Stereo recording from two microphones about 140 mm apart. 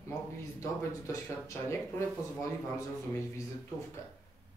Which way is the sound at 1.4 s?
20° left (ahead or behind).